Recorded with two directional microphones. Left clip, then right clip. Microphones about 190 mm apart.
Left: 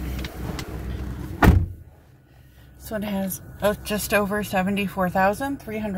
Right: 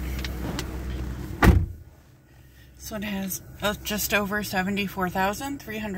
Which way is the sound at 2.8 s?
25° left (ahead or behind).